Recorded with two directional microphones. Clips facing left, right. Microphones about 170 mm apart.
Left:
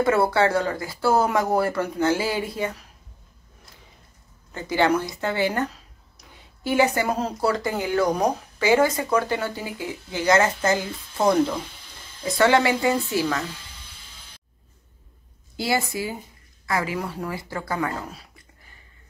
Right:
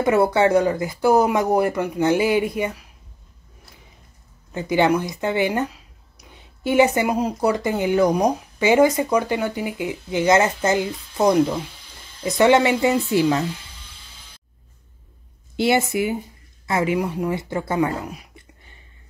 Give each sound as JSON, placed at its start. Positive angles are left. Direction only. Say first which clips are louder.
{"t": 0.0, "sound": "speech", "louder": "right 3 dB", "side_deg": -20}
{"t": 4.6, "sound": "speech", "louder": "right 3 dB", "side_deg": -15}
{"t": 15.5, "sound": "speech", "louder": "right 6 dB", "side_deg": -25}